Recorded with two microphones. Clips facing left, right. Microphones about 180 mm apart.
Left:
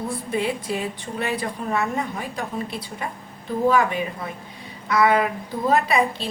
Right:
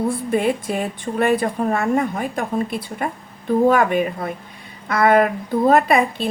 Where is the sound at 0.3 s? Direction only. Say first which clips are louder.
Right 2 dB; 50° right (ahead or behind).